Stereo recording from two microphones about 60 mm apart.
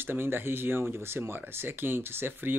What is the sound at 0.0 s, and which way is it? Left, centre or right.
Speech, right.